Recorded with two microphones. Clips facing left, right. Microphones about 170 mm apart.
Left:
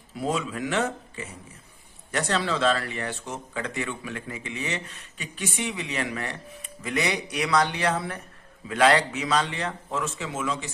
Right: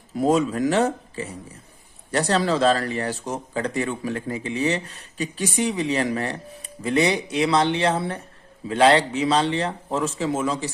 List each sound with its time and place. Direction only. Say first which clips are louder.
0.2 s speech: right 8 dB; 40° right (ahead or behind)